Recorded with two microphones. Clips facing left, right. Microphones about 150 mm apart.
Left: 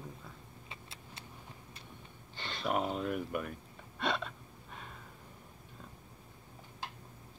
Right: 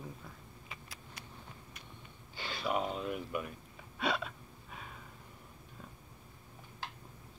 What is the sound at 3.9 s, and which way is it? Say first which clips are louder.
Gasp: even; 5° right (ahead or behind).